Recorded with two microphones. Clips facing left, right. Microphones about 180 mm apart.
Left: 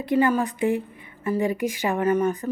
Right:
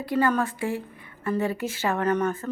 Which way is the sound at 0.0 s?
20° left (ahead or behind).